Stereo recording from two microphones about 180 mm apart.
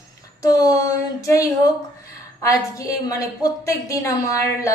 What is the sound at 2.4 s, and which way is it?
A woman's voice, 20° left (ahead or behind).